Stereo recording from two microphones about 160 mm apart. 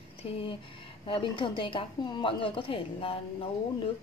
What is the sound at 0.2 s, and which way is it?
A woman's voice, 35° left (ahead or behind).